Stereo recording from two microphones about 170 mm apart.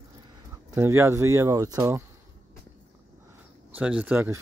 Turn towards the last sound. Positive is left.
turn(degrees=-10)  # may be behind; listen again after turning